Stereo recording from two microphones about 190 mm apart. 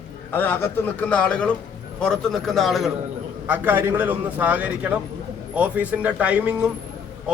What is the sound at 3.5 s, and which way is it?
A man's voice, 10° right (ahead or behind).